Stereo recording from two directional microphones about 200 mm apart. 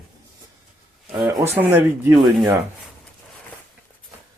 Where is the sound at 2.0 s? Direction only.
15° right (ahead or behind).